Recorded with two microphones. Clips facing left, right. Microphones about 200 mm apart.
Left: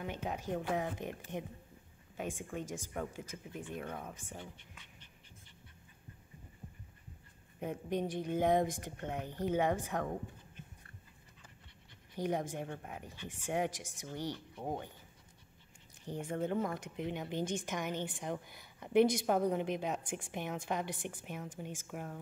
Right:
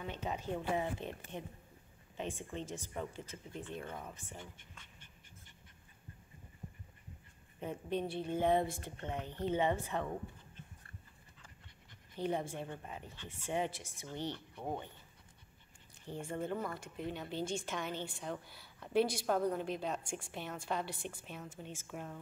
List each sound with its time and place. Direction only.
0.0 s speech: 10° left (ahead or behind)
7.6 s speech: 15° left (ahead or behind)
12.2 s speech: 15° left (ahead or behind)
16.1 s speech: 15° left (ahead or behind)